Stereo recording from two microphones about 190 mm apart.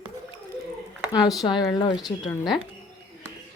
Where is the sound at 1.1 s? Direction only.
20° left (ahead or behind).